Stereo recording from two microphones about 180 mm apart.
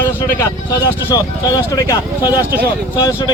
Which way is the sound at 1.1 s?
20° left (ahead or behind).